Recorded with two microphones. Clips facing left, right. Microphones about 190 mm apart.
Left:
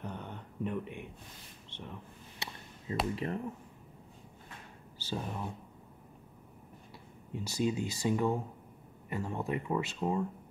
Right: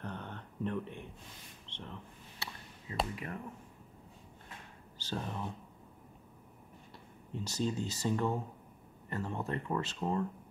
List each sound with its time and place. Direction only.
0.0 s a sound: 10° left (ahead or behind)
2.9 s speech: 30° left (ahead or behind)
4.9 s speech: 10° left (ahead or behind)
7.3 s speech: 10° left (ahead or behind)